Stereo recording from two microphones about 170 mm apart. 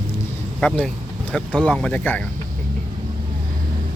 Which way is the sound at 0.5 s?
5° left (ahead or behind).